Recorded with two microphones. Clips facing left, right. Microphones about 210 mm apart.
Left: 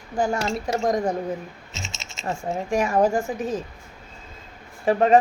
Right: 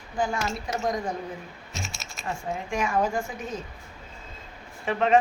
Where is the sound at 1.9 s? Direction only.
25° left (ahead or behind).